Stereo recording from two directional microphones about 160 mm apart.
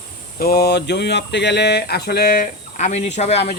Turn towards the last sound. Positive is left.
turn(degrees=40)  # may be behind; listen again after turning